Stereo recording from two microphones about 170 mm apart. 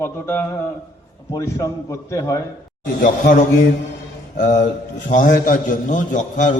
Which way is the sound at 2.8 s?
55° left (ahead or behind).